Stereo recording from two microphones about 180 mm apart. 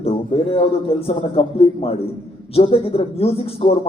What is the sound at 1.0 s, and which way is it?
A man's voice, 35° left (ahead or behind).